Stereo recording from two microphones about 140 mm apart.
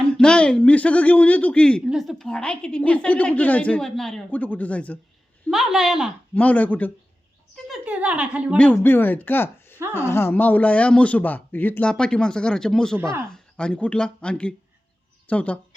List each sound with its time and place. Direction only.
0.1 s a woman's voice: 5° left (ahead or behind)
5.5 s a woman's voice: centre (ahead or behind)
6.3 s a woman's voice: 10° left (ahead or behind)
7.5 s a woman's voice: 5° right (ahead or behind)
8.5 s a woman's voice: 10° left (ahead or behind)
13.0 s a woman's voice: 15° right (ahead or behind)
13.3 s a woman's voice: 5° left (ahead or behind)